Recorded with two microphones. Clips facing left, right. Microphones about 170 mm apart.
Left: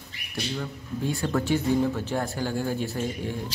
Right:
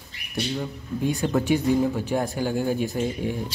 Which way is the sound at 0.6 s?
15° right (ahead or behind).